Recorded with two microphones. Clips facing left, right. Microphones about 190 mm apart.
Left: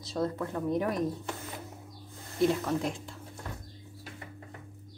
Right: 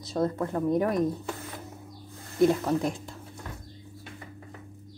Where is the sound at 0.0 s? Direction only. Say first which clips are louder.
Right 4 dB; 45° right (ahead or behind).